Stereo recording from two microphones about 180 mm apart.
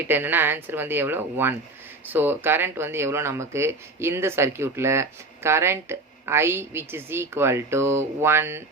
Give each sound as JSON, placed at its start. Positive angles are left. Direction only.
{"t": 0.0, "sound": "speech", "side_deg": -10}